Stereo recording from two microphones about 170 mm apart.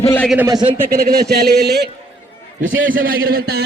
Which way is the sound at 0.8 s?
65° right (ahead or behind).